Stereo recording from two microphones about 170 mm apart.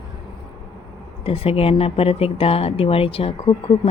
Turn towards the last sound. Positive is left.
turn(degrees=35)  # may be behind; listen again after turning